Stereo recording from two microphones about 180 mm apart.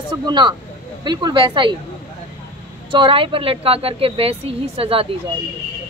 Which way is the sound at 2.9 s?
30° right (ahead or behind).